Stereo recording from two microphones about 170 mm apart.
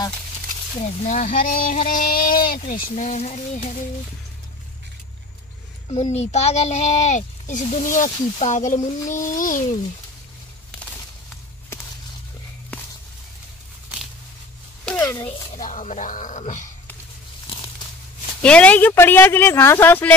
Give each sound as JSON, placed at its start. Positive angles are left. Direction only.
{"t": 0.7, "sound": "a child's voice", "side_deg": 40}
{"t": 5.9, "sound": "a child's voice", "side_deg": 40}
{"t": 15.0, "sound": "a sound", "side_deg": 15}
{"t": 15.2, "sound": "a woman's voice", "side_deg": 35}
{"t": 15.6, "sound": "a child's voice", "side_deg": 45}
{"t": 18.4, "sound": "speech", "side_deg": 5}